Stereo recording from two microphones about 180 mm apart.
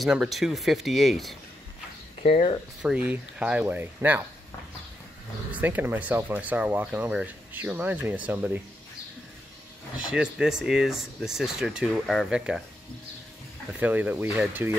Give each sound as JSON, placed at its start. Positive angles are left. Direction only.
{"t": 0.0, "sound": "speech", "side_deg": 0}
{"t": 2.2, "sound": "speech", "side_deg": 35}
{"t": 2.8, "sound": "speech", "side_deg": -5}
{"t": 5.5, "sound": "speech", "side_deg": -10}
{"t": 10.1, "sound": "speech", "side_deg": -5}
{"t": 13.7, "sound": "speech", "side_deg": -10}